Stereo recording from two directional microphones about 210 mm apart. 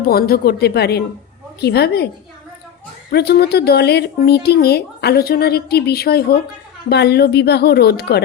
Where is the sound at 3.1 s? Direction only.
50° left (ahead or behind).